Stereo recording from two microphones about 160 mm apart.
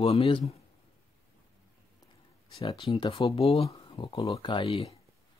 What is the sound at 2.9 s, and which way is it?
Speech, 35° left (ahead or behind).